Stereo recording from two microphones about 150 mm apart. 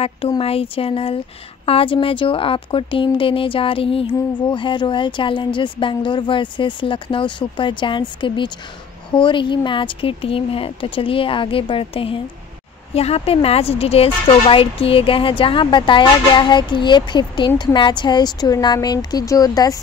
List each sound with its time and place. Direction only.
0.4 s speech: 40° left (ahead or behind)